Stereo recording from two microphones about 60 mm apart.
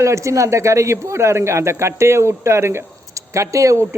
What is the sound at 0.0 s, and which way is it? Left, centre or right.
A man's voice, right.